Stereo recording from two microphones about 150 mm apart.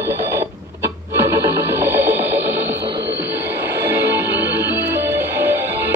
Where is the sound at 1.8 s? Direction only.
15° right (ahead or behind).